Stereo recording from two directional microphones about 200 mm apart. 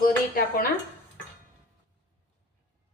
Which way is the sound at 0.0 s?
45° left (ahead or behind).